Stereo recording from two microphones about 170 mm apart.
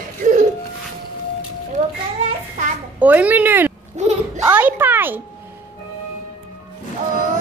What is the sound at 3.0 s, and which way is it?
Speech, 10° right (ahead or behind).